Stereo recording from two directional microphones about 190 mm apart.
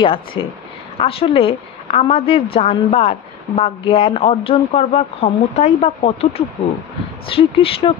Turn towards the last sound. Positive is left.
turn(degrees=30)  # may be behind; listen again after turning